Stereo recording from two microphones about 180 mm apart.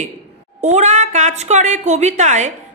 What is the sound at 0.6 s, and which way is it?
A woman's voice, 40° right (ahead or behind).